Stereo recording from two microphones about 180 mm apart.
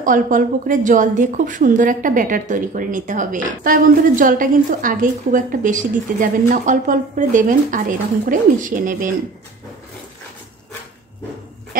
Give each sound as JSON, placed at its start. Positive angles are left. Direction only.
{"t": 0.0, "sound": "a woman's voice", "side_deg": -45}